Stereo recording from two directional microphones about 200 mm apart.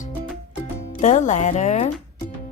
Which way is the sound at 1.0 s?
35° left (ahead or behind).